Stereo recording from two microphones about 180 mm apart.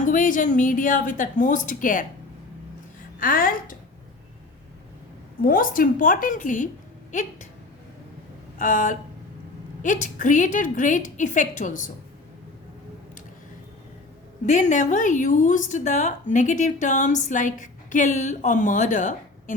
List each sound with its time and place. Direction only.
0.0 s a woman's voice: 50° left (ahead or behind)
3.2 s a woman's voice: 50° left (ahead or behind)
5.4 s a woman's voice: 50° left (ahead or behind)
8.5 s a sound: 45° left (ahead or behind)
9.8 s a woman's voice: 45° left (ahead or behind)
14.4 s a woman's voice: 40° left (ahead or behind)